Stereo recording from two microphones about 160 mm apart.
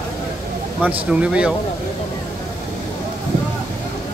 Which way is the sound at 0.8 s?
5° right (ahead or behind).